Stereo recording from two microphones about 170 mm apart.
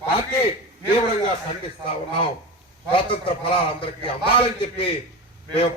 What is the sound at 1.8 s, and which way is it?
A man's voice, 30° left (ahead or behind).